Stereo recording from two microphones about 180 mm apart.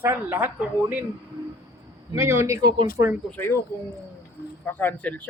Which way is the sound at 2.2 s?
15° right (ahead or behind).